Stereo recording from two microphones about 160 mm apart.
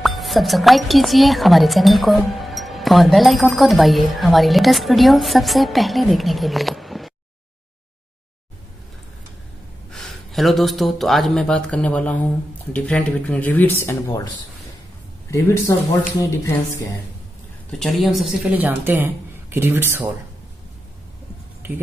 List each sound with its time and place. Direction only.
0.0 s speech: centre (ahead or behind)
9.8 s speech: centre (ahead or behind); by 14.2 s 15° left (ahead or behind)
15.3 s speech: 15° left (ahead or behind)
17.6 s speech: 5° left (ahead or behind); by 20.1 s 15° right (ahead or behind)